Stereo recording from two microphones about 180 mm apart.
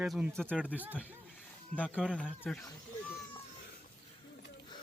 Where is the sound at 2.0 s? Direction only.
5° left (ahead or behind).